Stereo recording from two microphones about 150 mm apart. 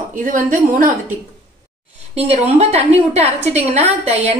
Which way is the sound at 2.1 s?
45° right (ahead or behind).